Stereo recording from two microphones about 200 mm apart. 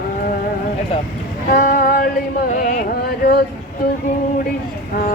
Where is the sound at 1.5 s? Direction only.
45° left (ahead or behind).